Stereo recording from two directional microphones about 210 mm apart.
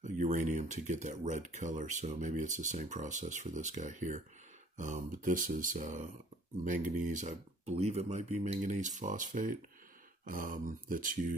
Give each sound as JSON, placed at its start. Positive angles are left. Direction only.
{"t": 0.0, "sound": "speech", "side_deg": -35}